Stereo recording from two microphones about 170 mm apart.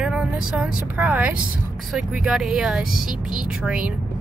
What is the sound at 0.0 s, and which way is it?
Speech, 5° right (ahead or behind).